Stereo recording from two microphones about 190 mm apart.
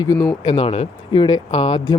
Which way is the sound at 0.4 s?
30° left (ahead or behind).